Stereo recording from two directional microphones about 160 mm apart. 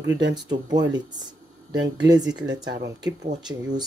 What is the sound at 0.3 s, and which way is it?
Speech, 25° right (ahead or behind).